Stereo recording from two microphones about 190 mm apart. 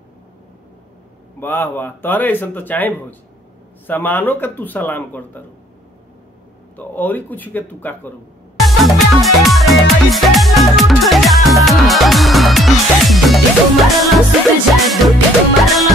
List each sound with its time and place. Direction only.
1.4 s a man's voice: 10° left (ahead or behind)
6.8 s a man's voice: 10° left (ahead or behind)
8.5 s music: centre (ahead or behind)